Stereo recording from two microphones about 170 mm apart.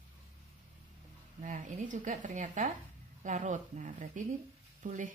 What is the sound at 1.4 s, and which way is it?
Speech, 50° right (ahead or behind).